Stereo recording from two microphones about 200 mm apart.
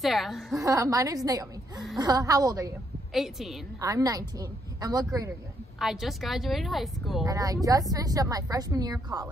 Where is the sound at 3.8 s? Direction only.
15° right (ahead or behind).